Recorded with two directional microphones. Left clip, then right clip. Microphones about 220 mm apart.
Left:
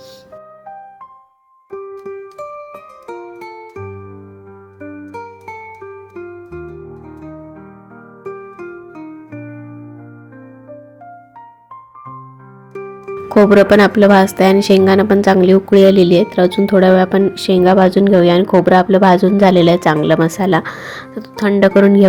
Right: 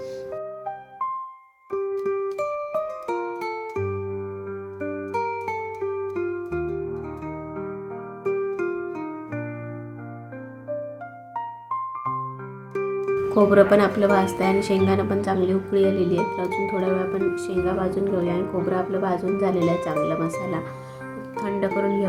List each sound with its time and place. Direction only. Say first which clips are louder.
1.7 s music: right 3 dB; centre (ahead or behind)
12.7 s music: right 3 dB; centre (ahead or behind)
13.3 s a woman's voice: left 8 dB; 40° left (ahead or behind)